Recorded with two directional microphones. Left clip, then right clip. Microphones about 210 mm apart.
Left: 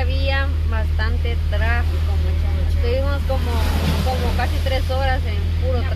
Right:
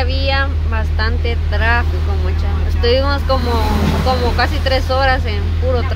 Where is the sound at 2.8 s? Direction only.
20° right (ahead or behind).